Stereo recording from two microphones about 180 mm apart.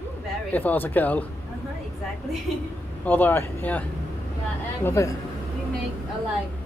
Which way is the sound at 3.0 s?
10° left (ahead or behind).